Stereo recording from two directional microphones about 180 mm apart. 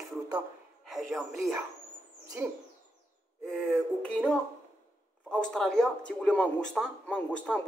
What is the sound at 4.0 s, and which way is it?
A man's voice, 5° left (ahead or behind).